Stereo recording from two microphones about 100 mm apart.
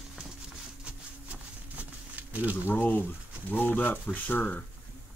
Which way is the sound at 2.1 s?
15° right (ahead or behind).